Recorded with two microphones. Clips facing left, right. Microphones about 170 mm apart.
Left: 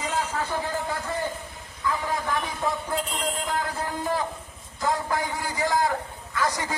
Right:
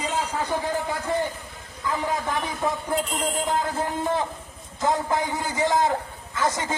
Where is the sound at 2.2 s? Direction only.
20° right (ahead or behind).